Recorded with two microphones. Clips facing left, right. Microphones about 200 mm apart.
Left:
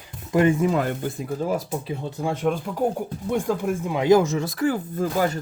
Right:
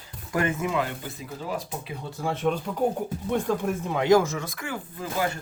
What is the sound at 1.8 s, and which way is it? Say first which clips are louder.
Speech: left 4 dB; 25° left (ahead or behind).